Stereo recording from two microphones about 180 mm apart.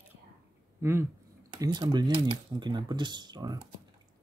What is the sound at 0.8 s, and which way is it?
Speech, 15° right (ahead or behind).